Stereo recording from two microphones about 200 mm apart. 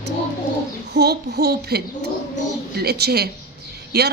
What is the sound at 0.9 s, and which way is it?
A woman's voice, 55° right (ahead or behind).